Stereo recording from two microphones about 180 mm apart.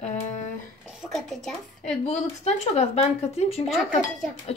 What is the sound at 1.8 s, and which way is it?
Speech, 40° left (ahead or behind).